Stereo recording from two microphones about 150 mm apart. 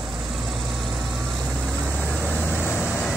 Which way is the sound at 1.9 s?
15° right (ahead or behind).